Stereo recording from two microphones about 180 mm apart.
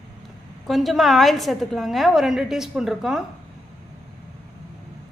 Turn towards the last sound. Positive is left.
turn(degrees=0)  # may be behind; listen again after turning